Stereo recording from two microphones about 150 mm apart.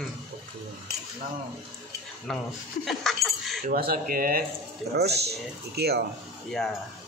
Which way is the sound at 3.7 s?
80° right.